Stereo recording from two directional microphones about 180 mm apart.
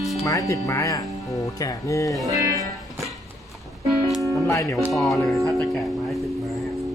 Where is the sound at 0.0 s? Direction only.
Centre (ahead or behind).